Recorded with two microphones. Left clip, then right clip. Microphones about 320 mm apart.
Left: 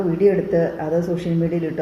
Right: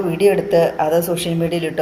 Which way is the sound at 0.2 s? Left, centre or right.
Right.